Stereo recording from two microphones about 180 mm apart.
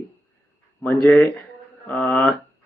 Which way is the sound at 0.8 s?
10° left (ahead or behind).